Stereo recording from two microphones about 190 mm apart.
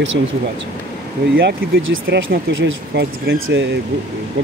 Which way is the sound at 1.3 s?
90° right.